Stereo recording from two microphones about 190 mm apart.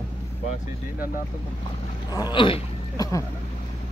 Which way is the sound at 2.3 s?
25° left (ahead or behind).